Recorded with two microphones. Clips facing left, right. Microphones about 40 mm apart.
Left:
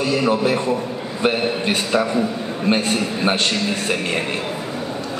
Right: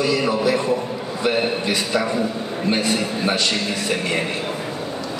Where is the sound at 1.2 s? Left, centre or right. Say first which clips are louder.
Left 1 dB; left.